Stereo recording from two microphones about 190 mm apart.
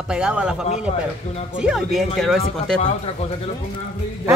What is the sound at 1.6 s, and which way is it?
Speech, centre (ahead or behind).